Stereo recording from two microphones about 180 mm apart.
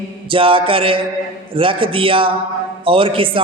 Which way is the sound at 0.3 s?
30° right (ahead or behind).